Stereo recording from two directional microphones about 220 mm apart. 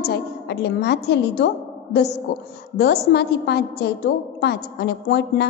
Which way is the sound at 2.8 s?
50° left (ahead or behind).